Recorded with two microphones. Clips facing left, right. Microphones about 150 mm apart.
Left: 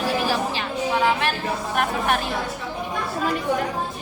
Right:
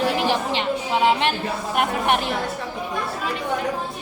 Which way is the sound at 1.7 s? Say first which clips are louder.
Right 2 dB; 20° right (ahead or behind).